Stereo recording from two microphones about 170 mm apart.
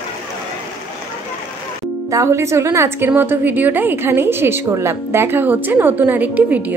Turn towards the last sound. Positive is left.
turn(degrees=-10)  # may be behind; listen again after turning